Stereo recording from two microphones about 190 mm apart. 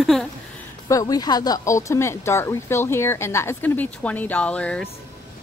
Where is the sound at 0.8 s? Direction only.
20° left (ahead or behind).